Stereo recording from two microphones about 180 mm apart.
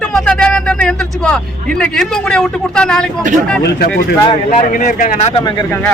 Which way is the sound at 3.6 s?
65° left (ahead or behind).